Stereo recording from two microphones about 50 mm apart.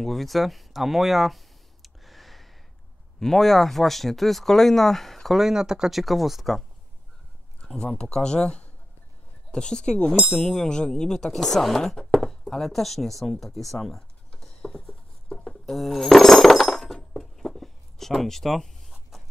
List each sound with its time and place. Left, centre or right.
0.0 s a sound: centre
3.2 s speech: centre
5.4 s speech: centre
7.6 s speech: centre
14.3 s patter: centre
15.3 s a sound: centre